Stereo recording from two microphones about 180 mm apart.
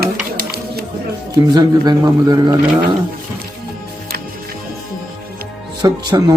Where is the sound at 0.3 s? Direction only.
60° right (ahead or behind).